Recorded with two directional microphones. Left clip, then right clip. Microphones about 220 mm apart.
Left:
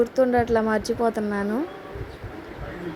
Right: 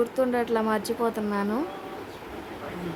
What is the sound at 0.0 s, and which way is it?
A woman's voice, 10° left (ahead or behind).